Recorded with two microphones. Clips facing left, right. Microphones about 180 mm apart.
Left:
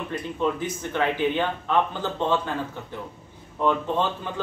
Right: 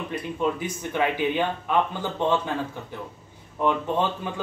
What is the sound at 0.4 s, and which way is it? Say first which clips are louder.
A man's voice: left 1 dB; 10° right (ahead or behind).